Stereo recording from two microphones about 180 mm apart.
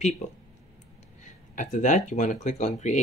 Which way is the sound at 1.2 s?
45° left (ahead or behind).